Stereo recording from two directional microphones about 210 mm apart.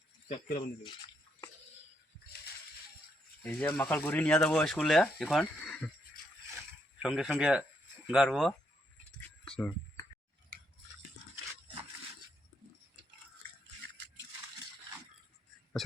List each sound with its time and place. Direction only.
0.3 s speech: 40° left (ahead or behind)
3.4 s speech: 5° left (ahead or behind)
7.0 s speech: 5° right (ahead or behind)
9.5 s a sound: 5° left (ahead or behind)